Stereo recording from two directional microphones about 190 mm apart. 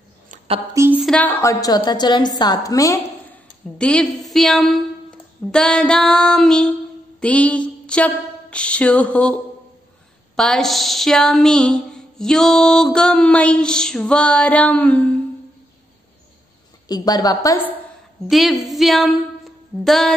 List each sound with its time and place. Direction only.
0.7 s speech: 10° right (ahead or behind)
1.0 s a woman's voice: 5° left (ahead or behind)
3.7 s a woman's voice: 5° left (ahead or behind)
7.2 s a sound: 5° left (ahead or behind)
10.3 s a woman's voice: 5° left (ahead or behind)
16.8 s a woman's voice: 20° left (ahead or behind)
18.3 s a sound: centre (ahead or behind)